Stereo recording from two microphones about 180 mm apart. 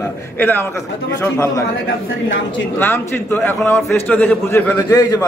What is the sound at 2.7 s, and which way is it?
Speech, 15° left (ahead or behind).